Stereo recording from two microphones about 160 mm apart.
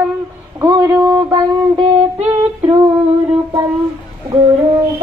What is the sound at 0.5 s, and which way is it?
Speech, 20° right (ahead or behind).